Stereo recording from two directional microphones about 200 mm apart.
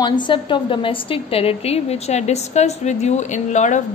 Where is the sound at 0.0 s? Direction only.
25° left (ahead or behind).